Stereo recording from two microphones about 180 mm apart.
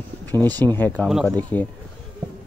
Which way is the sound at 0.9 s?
Centre (ahead or behind).